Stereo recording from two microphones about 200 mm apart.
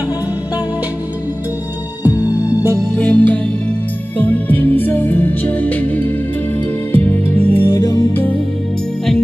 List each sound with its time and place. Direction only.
2.0 s music: 15° left (ahead or behind)